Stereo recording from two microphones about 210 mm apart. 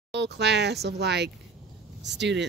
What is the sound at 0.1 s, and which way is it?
Speech, 55° right (ahead or behind).